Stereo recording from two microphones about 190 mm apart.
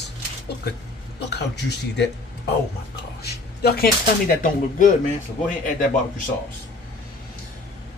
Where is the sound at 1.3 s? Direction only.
60° left (ahead or behind).